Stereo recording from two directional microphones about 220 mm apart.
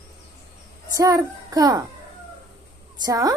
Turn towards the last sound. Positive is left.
turn(degrees=-15)  # may be behind; listen again after turning